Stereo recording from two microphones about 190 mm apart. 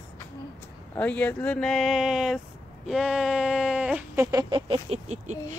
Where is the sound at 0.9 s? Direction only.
10° left (ahead or behind).